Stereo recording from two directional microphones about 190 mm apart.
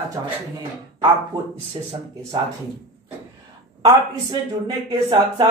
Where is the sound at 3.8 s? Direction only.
20° right (ahead or behind).